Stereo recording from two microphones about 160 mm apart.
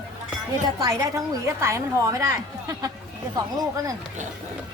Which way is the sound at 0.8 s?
20° right (ahead or behind).